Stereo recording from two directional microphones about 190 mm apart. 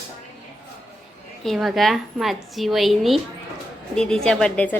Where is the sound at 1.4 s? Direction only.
Centre (ahead or behind).